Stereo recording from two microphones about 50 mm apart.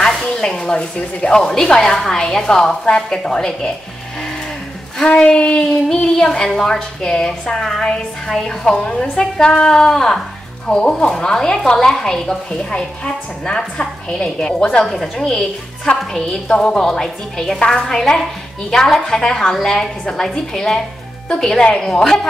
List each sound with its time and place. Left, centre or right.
0.0 s a woman's voice: centre
5.0 s a woman's voice: centre